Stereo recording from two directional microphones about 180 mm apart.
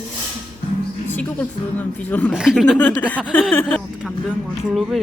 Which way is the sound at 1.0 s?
10° left (ahead or behind).